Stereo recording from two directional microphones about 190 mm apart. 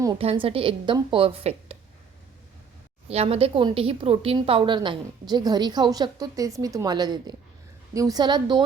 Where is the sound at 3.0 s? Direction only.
30° right (ahead or behind).